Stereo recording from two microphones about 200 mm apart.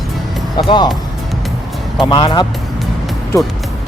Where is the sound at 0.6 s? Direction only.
25° left (ahead or behind).